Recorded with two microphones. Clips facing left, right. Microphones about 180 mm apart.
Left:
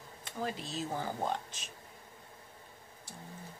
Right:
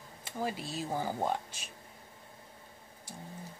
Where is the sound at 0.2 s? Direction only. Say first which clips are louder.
Right 2 dB; 10° right (ahead or behind).